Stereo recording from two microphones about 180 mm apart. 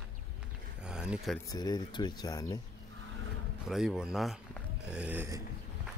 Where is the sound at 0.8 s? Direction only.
5° right (ahead or behind).